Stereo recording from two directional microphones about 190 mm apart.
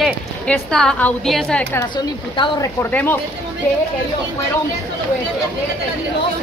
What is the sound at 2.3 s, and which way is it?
Speech, 25° left (ahead or behind).